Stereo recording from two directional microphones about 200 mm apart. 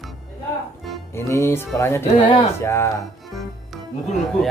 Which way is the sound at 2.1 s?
30° left (ahead or behind).